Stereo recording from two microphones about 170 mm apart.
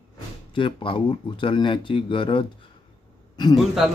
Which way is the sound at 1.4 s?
30° left (ahead or behind).